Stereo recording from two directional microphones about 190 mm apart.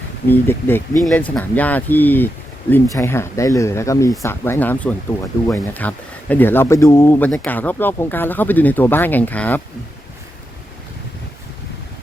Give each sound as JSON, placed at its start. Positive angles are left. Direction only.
{"t": 0.3, "sound": "speech", "side_deg": 10}